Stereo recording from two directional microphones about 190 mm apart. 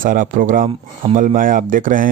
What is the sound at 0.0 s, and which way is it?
Speech, 45° right (ahead or behind).